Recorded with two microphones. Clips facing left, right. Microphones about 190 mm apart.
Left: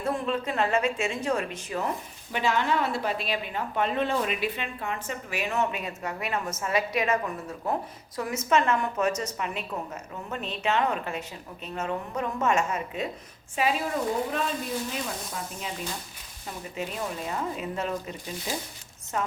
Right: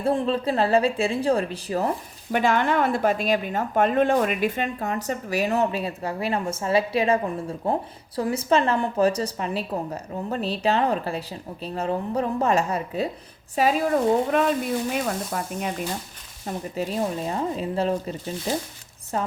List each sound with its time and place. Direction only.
0.0 s speech: 30° right (ahead or behind)
2.3 s speech: 50° right (ahead or behind)
14.3 s speech: 60° right (ahead or behind)
16.5 s speech: 35° right (ahead or behind)